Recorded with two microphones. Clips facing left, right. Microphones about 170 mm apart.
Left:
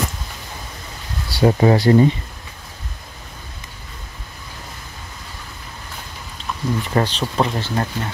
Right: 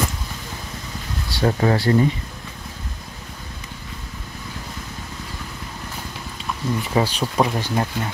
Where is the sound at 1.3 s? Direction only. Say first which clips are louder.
Left 5 dB; 15° left (ahead or behind).